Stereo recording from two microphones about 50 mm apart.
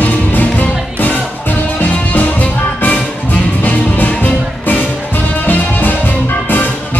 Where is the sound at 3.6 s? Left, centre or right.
Left.